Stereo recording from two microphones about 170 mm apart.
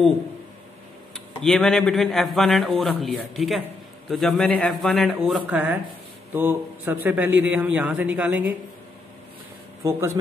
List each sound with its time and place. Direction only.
1.1 s a man's voice: 5° left (ahead or behind)
9.8 s a man's voice: 15° right (ahead or behind)